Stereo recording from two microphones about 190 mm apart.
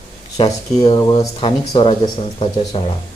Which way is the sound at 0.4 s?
30° left (ahead or behind).